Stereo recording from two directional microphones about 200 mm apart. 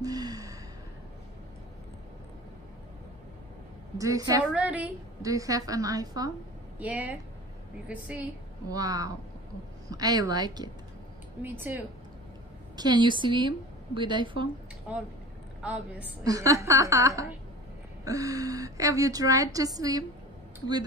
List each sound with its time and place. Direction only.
0.0 s gasp: 20° right (ahead or behind)
4.0 s a woman's voice: 15° right (ahead or behind)
4.5 s a woman's voice: 5° right (ahead or behind)
6.8 s a woman's voice: 5° right (ahead or behind)
8.6 s a woman's voice: 15° right (ahead or behind)
11.4 s a woman's voice: 10° right (ahead or behind)
12.7 s a woman's voice: 20° right (ahead or behind)
15.6 s a woman's voice: 5° right (ahead or behind)